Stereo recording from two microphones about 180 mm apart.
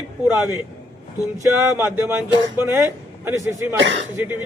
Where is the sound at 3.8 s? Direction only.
90° right.